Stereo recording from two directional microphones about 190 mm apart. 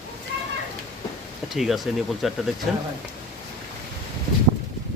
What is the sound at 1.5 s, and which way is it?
Speech, centre (ahead or behind).